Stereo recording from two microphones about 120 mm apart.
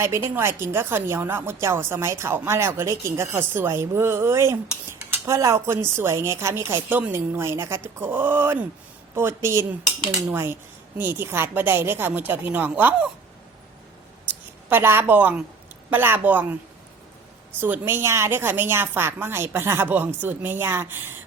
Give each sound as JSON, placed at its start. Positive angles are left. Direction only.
{"t": 0.0, "sound": "a woman's voice", "side_deg": -20}
{"t": 14.7, "sound": "a woman's voice", "side_deg": -20}
{"t": 17.6, "sound": "a woman's voice", "side_deg": -20}